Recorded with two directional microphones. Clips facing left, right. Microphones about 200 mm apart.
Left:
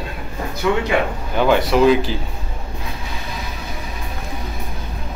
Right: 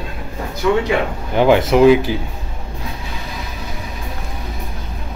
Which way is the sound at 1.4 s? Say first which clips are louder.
Right 3 dB; 20° right (ahead or behind).